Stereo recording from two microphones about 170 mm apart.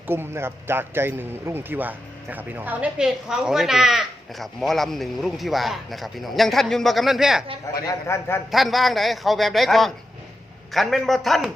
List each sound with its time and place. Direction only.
0.1 s a man's voice: 15° right (ahead or behind)
7.9 s a man's voice: 15° left (ahead or behind)
8.4 s a man's voice: centre (ahead or behind)